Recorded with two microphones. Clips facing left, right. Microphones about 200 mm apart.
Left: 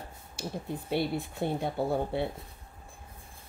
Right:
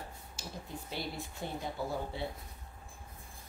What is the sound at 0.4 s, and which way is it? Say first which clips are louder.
Speech: left 9 dB; 60° left (ahead or behind).